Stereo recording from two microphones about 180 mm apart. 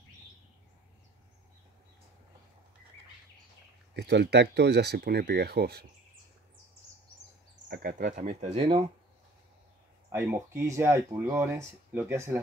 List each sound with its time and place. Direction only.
3.9 s speech: 70° right (ahead or behind)
7.6 s speech: 55° right (ahead or behind); by 8.8 s 30° right (ahead or behind)
10.0 s speech: 15° right (ahead or behind)